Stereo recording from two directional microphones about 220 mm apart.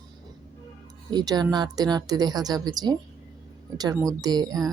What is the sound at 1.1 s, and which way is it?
A woman's voice, 20° right (ahead or behind).